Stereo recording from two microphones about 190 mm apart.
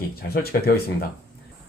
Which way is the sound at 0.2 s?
55° left (ahead or behind).